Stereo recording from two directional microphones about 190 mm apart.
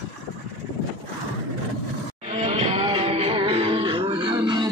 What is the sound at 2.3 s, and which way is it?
Music, 30° right (ahead or behind).